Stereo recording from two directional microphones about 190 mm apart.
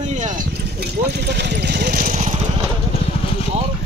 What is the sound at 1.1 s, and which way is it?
Speech, 65° right (ahead or behind).